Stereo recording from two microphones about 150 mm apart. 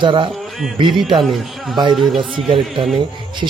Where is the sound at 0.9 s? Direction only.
Centre (ahead or behind).